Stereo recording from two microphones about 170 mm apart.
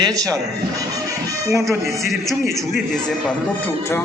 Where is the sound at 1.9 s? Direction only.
Centre (ahead or behind).